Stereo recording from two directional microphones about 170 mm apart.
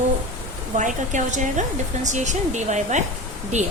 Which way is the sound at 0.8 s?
45° right (ahead or behind).